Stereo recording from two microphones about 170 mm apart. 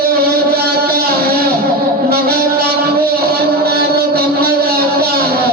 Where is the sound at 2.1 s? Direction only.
65° right (ahead or behind).